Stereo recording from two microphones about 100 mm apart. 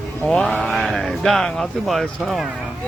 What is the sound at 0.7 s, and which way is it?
Speech, centre (ahead or behind).